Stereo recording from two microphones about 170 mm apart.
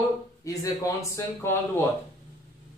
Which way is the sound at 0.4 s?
20° left (ahead or behind).